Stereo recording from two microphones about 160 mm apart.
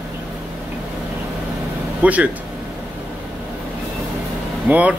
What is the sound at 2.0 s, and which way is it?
Speech, 10° right (ahead or behind).